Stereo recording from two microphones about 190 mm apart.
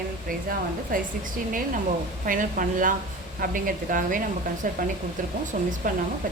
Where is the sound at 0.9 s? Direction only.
45° right (ahead or behind).